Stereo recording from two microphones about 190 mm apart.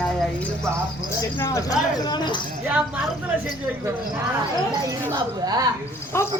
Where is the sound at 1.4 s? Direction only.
15° left (ahead or behind).